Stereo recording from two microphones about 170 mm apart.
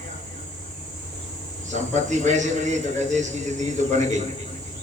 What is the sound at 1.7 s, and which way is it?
A man's voice, 45° right (ahead or behind).